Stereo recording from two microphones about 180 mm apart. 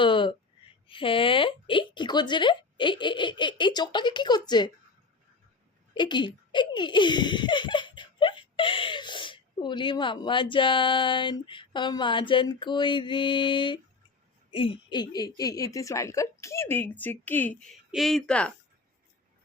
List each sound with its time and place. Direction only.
0.0 s a sound: 30° left (ahead or behind)
0.9 s speech: 30° left (ahead or behind)
5.9 s speech: 25° left (ahead or behind); by 18.5 s 5° left (ahead or behind)